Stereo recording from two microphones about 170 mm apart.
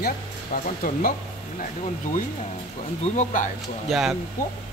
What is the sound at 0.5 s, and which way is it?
Speech, 60° left (ahead or behind).